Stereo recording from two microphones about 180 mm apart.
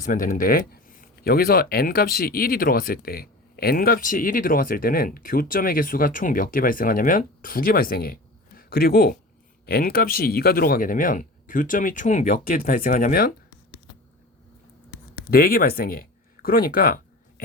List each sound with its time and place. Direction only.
0.0 s speech: 50° left (ahead or behind)
15.3 s speech: 55° left (ahead or behind)